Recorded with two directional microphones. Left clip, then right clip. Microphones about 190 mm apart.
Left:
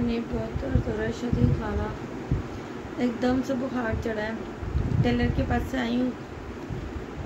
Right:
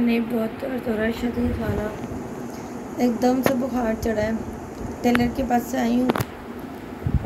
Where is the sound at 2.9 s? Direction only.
5° left (ahead or behind).